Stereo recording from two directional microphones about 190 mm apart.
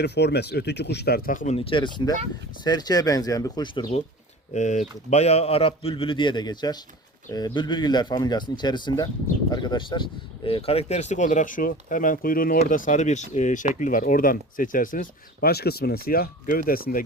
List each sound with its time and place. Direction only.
0.0 s speech: 60° left (ahead or behind); by 1.5 s 45° left (ahead or behind)
1.5 s speech: 25° left (ahead or behind)
4.5 s speech: 40° left (ahead or behind)